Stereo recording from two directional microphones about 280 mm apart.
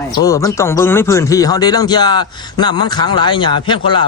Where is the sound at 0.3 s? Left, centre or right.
Centre.